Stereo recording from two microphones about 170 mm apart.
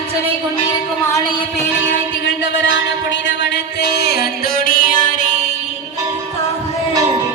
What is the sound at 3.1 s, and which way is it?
Music, 90° left.